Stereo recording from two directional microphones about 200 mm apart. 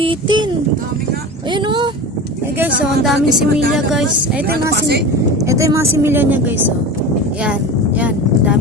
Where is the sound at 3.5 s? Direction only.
Centre (ahead or behind).